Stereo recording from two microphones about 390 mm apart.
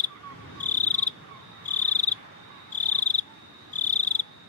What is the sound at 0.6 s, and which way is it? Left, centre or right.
Cricket, centre.